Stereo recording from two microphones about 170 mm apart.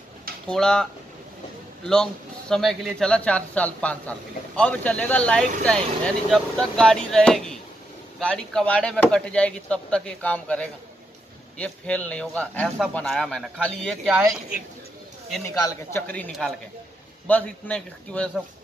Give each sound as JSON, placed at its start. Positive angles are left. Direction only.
{"t": 0.5, "sound": "speech", "side_deg": 5}
{"t": 2.5, "sound": "speech", "side_deg": 0}
{"t": 15.4, "sound": "a man's voice", "side_deg": 20}
{"t": 16.1, "sound": "speech", "side_deg": 5}